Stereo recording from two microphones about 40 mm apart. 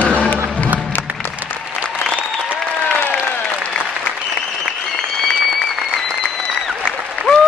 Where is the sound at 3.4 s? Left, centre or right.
Left.